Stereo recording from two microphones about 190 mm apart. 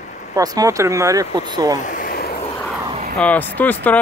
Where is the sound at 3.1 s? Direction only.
10° left (ahead or behind).